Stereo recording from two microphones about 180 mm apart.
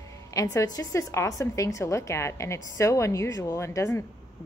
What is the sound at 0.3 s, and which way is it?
A woman's voice, 20° left (ahead or behind).